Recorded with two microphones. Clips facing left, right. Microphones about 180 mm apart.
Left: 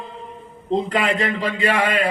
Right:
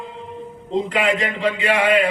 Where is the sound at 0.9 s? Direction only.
40° left (ahead or behind).